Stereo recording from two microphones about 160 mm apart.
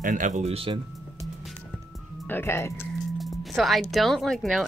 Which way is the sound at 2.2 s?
15° left (ahead or behind).